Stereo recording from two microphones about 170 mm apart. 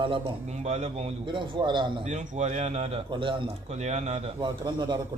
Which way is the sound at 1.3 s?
30° right (ahead or behind).